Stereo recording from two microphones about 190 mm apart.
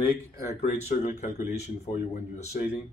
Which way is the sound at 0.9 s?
40° left (ahead or behind).